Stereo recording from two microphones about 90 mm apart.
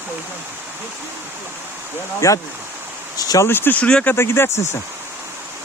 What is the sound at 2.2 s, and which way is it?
Speech, 35° left (ahead or behind).